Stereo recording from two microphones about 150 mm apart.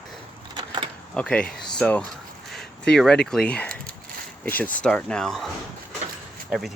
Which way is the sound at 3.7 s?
75° right (ahead or behind).